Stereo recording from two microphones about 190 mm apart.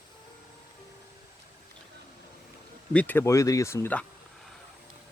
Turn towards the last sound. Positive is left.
turn(degrees=10)  # may be behind; listen again after turning